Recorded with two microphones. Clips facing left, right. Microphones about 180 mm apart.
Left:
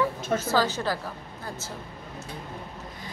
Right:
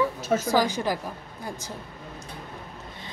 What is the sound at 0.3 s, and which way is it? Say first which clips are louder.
A woman's voice: right 3 dB; 15° right (ahead or behind).